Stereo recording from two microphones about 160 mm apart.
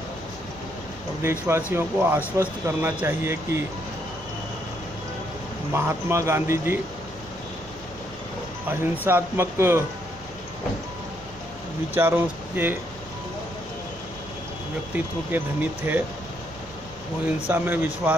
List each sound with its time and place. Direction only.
1.2 s speech: 15° right (ahead or behind)
5.7 s speech: 15° right (ahead or behind)
8.6 s speech: 10° right (ahead or behind)
11.9 s speech: 15° right (ahead or behind)
15.0 s speech: 10° right (ahead or behind)
17.5 s speech: 10° right (ahead or behind)